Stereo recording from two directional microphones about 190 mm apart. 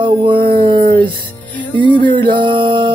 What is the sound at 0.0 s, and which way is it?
Speech, 25° right (ahead or behind).